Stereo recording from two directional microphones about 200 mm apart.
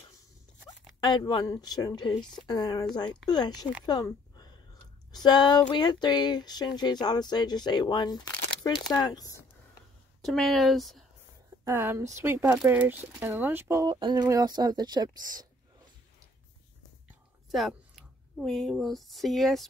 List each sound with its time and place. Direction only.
1.0 s speech: 20° left (ahead or behind)
3.8 s a sound: 20° left (ahead or behind)
5.1 s speech: 20° left (ahead or behind)
10.2 s speech: centre (ahead or behind)
11.6 s speech: 10° right (ahead or behind)
17.5 s speech: centre (ahead or behind)